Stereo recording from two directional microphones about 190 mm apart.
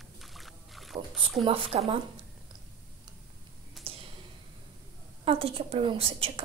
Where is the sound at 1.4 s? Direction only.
30° right (ahead or behind).